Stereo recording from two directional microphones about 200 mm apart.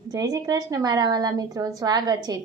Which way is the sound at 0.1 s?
20° right (ahead or behind).